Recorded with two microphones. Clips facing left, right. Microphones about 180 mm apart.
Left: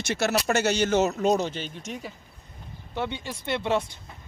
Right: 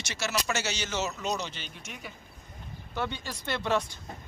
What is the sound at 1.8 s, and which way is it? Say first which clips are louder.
Speech: left 8 dB; 35° left (ahead or behind).